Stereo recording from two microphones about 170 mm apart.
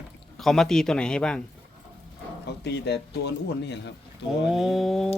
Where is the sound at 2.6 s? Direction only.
90° left.